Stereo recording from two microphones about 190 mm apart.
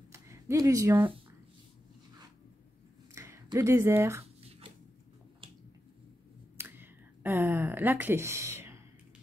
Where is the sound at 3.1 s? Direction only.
15° right (ahead or behind).